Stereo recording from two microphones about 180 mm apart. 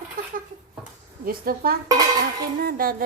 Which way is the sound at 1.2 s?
55° right (ahead or behind).